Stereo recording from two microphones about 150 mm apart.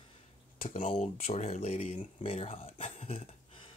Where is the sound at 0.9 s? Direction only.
45° left (ahead or behind).